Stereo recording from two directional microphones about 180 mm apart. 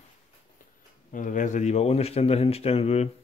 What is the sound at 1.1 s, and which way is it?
A man's voice, 45° left (ahead or behind).